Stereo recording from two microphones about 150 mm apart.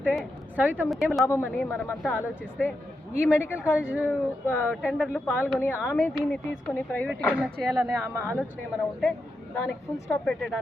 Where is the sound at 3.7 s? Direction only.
10° right (ahead or behind).